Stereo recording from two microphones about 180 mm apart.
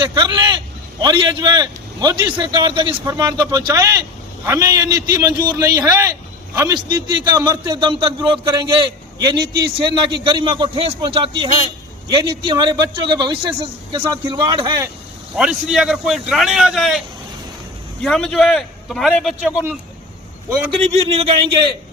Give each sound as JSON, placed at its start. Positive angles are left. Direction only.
{"t": 0.0, "sound": "vehicle", "side_deg": -25}
{"t": 1.0, "sound": "a man's voice", "side_deg": -25}
{"t": 15.4, "sound": "a man's voice", "side_deg": -5}
{"t": 18.0, "sound": "a man's voice", "side_deg": 5}
{"t": 19.5, "sound": "speech", "side_deg": -10}
{"t": 20.8, "sound": "speech", "side_deg": -35}